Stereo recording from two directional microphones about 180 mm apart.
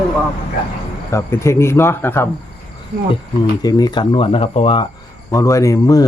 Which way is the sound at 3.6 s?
20° left (ahead or behind).